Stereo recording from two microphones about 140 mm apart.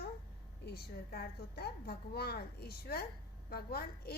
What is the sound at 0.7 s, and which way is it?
A woman's voice, 90° left.